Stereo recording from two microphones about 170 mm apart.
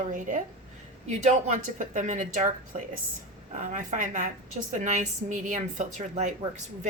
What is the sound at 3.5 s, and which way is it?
A woman's voice, 50° right (ahead or behind).